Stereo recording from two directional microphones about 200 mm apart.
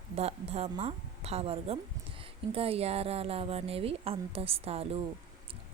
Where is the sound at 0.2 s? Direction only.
30° right (ahead or behind).